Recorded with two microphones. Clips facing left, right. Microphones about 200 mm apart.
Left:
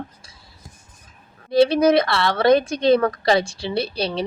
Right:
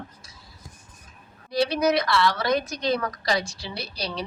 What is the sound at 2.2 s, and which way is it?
Speech, 55° left (ahead or behind).